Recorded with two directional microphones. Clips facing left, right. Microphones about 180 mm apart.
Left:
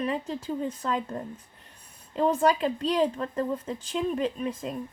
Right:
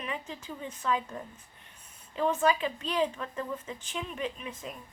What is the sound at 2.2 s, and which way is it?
Speech, 35° left (ahead or behind).